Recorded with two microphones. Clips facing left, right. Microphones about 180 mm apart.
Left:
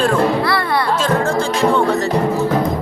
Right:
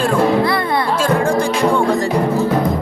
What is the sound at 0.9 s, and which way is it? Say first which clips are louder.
Music: right 4 dB; 10° right (ahead or behind).